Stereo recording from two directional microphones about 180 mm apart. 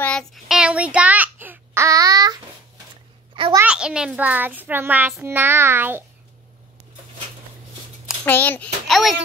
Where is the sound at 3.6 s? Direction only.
5° right (ahead or behind).